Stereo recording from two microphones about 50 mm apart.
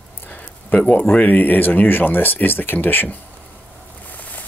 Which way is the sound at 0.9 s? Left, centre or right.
Left.